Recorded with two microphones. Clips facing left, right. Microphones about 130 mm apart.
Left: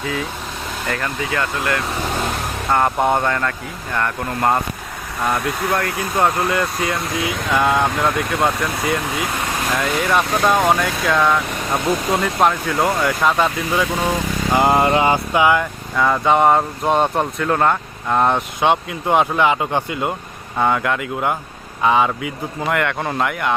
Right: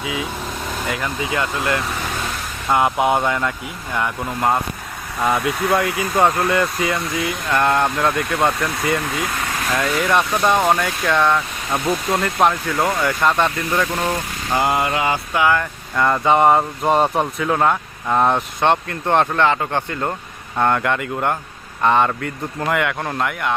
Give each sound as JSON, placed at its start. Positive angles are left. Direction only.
{"t": 0.0, "sound": "speech", "side_deg": -10}
{"t": 2.7, "sound": "speech", "side_deg": -10}
{"t": 14.6, "sound": "mantra", "side_deg": 30}
{"t": 16.0, "sound": "speech", "side_deg": 0}